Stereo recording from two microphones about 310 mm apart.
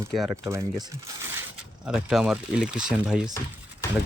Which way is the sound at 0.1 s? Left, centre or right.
Centre.